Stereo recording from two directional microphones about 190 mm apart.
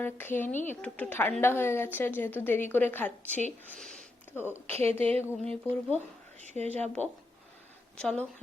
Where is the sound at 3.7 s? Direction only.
5° left (ahead or behind).